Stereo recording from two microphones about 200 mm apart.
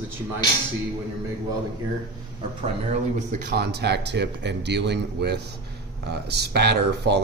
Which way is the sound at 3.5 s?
55° right (ahead or behind).